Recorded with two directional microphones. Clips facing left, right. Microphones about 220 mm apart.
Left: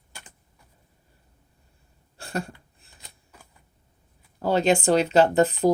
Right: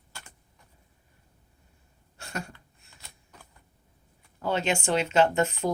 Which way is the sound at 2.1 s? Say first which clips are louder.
Left 6 dB; 35° left (ahead or behind).